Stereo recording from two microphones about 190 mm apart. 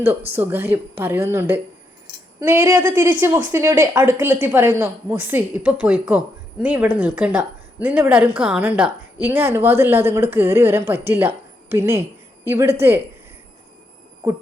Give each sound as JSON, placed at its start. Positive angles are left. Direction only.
{"t": 0.3, "sound": "a woman's voice", "side_deg": -10}